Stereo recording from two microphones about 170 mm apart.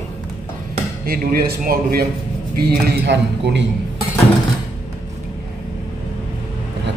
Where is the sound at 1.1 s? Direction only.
60° right (ahead or behind); by 3.7 s 90° right.